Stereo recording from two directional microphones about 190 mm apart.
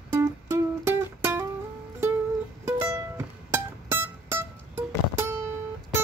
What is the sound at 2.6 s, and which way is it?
Music, 15° right (ahead or behind).